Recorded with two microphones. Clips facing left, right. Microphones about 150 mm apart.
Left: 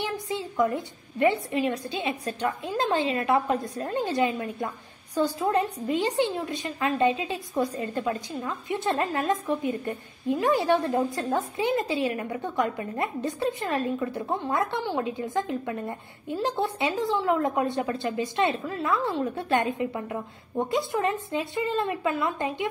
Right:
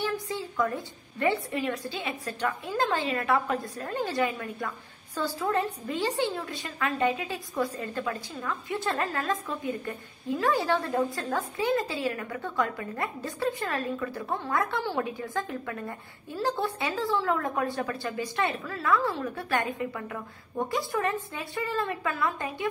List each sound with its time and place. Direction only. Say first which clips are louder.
0.0 s a woman's voice: left 1 dB; 20° left (ahead or behind)